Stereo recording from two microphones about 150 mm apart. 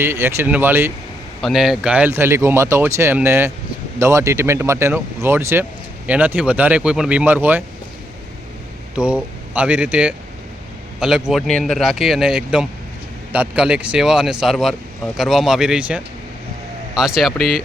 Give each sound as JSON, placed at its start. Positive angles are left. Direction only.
{"t": 0.0, "sound": "speech", "side_deg": -15}
{"t": 1.4, "sound": "speech", "side_deg": 0}
{"t": 9.0, "sound": "speech", "side_deg": -10}